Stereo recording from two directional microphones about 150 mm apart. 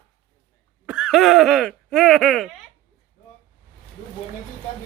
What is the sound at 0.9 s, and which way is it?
Speech, 5° right (ahead or behind).